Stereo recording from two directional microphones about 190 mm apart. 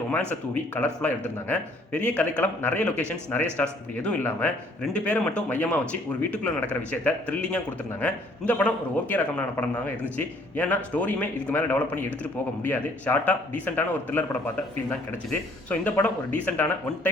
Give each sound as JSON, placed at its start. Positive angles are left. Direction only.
{"t": 0.1, "sound": "speech", "side_deg": 10}